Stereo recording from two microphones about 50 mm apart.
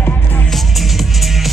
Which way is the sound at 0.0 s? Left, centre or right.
Left.